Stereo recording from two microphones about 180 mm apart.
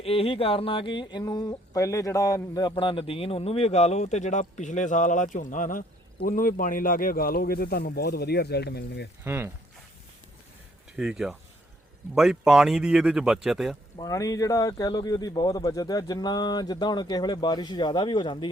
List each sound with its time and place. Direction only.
0.0 s speech: 30° left (ahead or behind); by 9.0 s 65° left (ahead or behind)
9.2 s speech: 15° right (ahead or behind)
10.9 s speech: 5° right (ahead or behind)
14.0 s speech: 20° left (ahead or behind)